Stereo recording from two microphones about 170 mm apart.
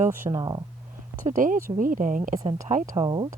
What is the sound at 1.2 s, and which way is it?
A woman's voice, 50° right (ahead or behind).